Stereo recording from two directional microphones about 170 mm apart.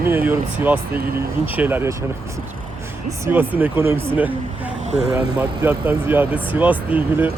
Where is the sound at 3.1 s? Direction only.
15° right (ahead or behind).